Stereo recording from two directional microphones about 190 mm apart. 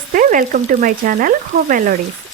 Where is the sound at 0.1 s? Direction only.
45° right (ahead or behind).